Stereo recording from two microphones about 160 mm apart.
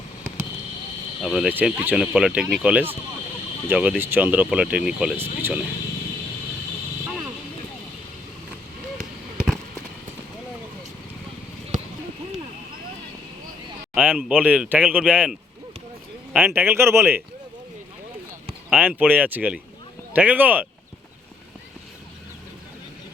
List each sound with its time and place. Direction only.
1.2 s speech: centre (ahead or behind)
1.5 s speech: 10° right (ahead or behind)
9.0 s basketball bounce: 5° right (ahead or behind)
11.7 s a sound: 55° right (ahead or behind)
13.9 s speech: 10° right (ahead or behind)
18.7 s speech: 10° right (ahead or behind)